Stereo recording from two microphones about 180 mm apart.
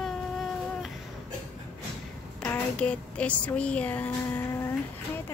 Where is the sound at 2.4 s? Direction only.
5° left (ahead or behind).